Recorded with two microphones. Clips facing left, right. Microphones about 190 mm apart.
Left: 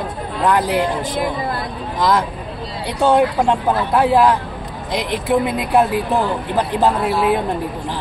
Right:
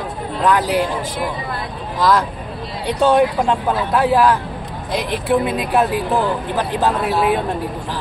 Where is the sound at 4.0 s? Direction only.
15° left (ahead or behind).